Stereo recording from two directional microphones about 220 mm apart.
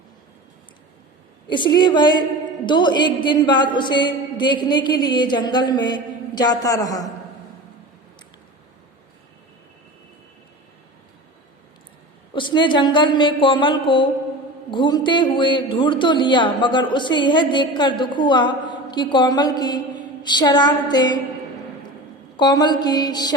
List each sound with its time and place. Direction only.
1.5 s speech: 20° left (ahead or behind)
12.3 s speech: 20° left (ahead or behind)
22.4 s speech: 20° left (ahead or behind)